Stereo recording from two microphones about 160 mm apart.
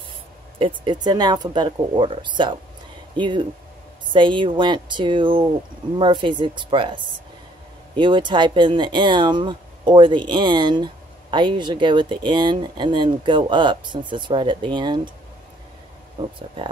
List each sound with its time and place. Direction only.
0.6 s speech: 30° right (ahead or behind)
16.2 s speech: 30° right (ahead or behind)